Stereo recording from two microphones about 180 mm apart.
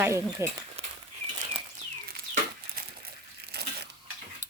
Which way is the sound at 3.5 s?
65° right (ahead or behind).